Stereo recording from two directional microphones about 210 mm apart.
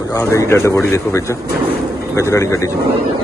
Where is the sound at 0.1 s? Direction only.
15° left (ahead or behind).